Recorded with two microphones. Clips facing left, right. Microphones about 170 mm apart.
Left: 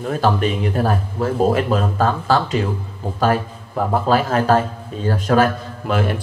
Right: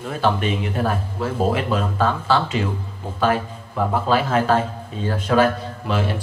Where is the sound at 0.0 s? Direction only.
40° left (ahead or behind).